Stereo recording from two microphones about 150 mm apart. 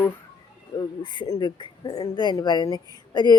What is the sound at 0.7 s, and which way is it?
A woman's voice, 30° left (ahead or behind).